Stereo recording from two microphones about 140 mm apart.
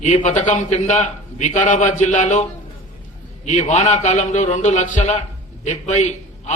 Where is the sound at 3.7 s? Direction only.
60° left (ahead or behind).